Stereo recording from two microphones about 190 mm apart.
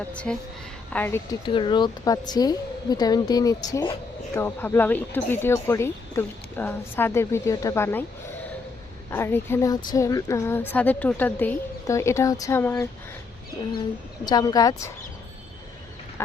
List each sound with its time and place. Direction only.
0.1 s speech: 5° left (ahead or behind)
1.5 s a woman's voice: 25° left (ahead or behind)
9.0 s speech: 15° left (ahead or behind)
14.3 s a woman's voice: 20° left (ahead or behind)